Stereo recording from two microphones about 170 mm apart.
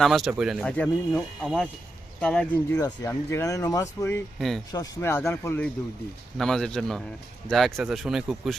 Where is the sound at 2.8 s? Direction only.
15° left (ahead or behind).